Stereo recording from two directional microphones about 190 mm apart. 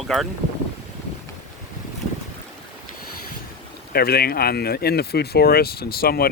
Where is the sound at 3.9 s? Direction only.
55° left (ahead or behind).